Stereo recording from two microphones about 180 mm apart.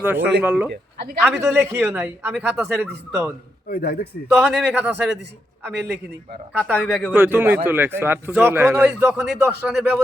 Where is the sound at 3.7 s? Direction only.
55° left (ahead or behind).